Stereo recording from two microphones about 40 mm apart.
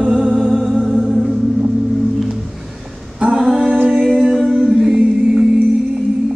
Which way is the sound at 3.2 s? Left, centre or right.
Centre.